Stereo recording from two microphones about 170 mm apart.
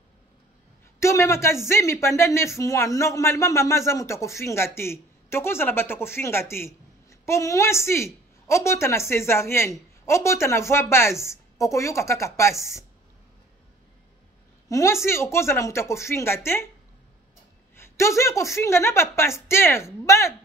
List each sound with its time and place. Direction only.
0.9 s a man's voice: 15° left (ahead or behind)
14.7 s a woman's voice: 20° left (ahead or behind)
17.7 s a man's voice: 15° left (ahead or behind)